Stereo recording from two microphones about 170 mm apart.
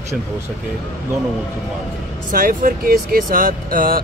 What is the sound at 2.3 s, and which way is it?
Speech, 55° right (ahead or behind).